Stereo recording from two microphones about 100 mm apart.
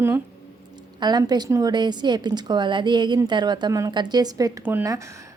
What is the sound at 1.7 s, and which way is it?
Speech, 45° right (ahead or behind).